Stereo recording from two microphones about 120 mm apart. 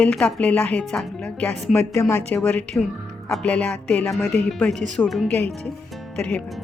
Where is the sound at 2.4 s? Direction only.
5° left (ahead or behind).